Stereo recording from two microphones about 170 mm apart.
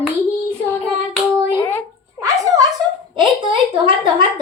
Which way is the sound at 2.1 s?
20° right (ahead or behind).